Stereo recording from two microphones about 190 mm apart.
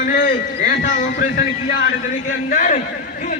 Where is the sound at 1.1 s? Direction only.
55° left (ahead or behind).